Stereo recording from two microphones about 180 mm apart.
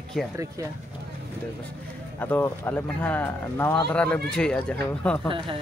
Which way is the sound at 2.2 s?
10° left (ahead or behind).